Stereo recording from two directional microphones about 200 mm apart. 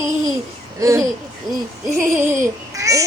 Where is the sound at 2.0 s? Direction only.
Centre (ahead or behind).